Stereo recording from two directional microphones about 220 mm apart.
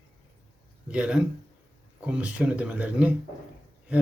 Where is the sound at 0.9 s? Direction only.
5° right (ahead or behind).